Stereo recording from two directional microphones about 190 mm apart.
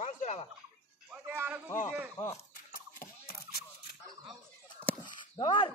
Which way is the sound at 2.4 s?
45° left (ahead or behind).